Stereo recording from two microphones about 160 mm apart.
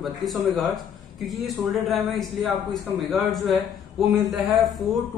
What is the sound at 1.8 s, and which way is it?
A man's voice, centre (ahead or behind).